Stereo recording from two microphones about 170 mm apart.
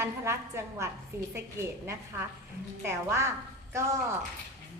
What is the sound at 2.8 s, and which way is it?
Speech, 15° right (ahead or behind).